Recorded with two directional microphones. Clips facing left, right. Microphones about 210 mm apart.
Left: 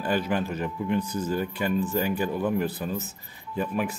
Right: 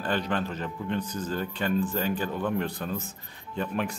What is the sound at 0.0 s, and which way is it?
Speech, 10° left (ahead or behind).